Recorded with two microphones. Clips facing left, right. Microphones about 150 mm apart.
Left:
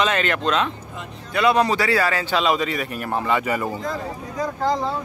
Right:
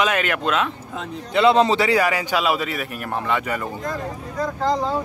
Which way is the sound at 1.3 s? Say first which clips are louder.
Right 3 dB; 25° right (ahead or behind).